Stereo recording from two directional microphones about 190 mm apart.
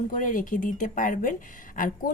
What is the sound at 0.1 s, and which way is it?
Speech, 45° left (ahead or behind).